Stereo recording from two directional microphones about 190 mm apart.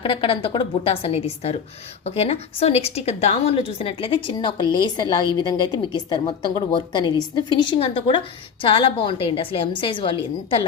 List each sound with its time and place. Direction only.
0.0 s a woman's voice: 25° left (ahead or behind)